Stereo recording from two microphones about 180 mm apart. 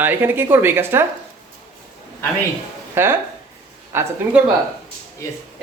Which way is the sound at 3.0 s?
10° right (ahead or behind).